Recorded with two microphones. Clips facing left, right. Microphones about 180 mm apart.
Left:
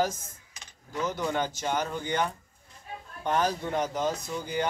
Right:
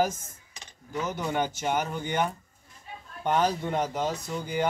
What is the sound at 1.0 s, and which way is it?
Speech, 15° right (ahead or behind).